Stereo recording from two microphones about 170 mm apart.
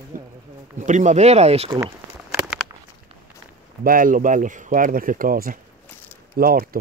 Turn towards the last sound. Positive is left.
turn(degrees=-60)  # may be behind; listen again after turning